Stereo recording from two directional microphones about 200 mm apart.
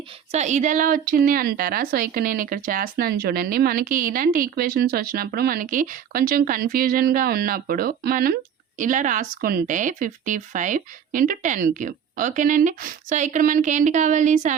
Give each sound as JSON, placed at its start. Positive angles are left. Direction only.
{"t": 0.3, "sound": "a woman's voice", "side_deg": -35}